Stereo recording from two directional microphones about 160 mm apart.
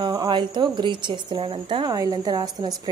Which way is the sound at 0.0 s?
25° right (ahead or behind).